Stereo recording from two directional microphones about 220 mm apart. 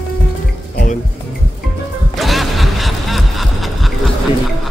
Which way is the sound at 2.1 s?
Centre (ahead or behind).